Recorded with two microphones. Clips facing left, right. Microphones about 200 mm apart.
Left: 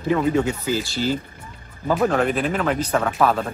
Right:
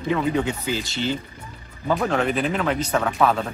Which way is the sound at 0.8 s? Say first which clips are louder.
Left 2 dB; 20° right (ahead or behind).